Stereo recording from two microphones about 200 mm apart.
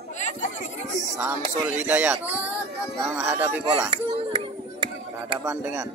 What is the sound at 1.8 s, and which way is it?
Speech, 10° right (ahead or behind).